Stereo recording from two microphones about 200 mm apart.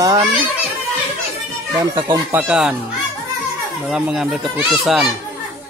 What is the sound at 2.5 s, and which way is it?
Speech, 5° right (ahead or behind).